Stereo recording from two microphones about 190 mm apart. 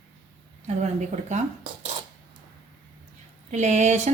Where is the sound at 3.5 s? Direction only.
35° right (ahead or behind).